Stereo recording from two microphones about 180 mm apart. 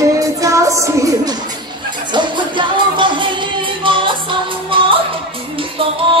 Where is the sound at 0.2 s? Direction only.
20° right (ahead or behind).